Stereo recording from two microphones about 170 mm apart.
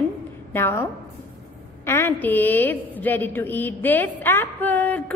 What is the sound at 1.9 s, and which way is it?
A woman's voice, 15° left (ahead or behind).